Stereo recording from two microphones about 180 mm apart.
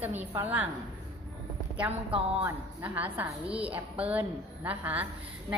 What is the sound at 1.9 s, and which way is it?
Speech, 30° right (ahead or behind).